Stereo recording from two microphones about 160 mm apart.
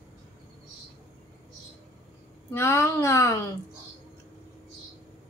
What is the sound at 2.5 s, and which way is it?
A woman's voice, 15° left (ahead or behind).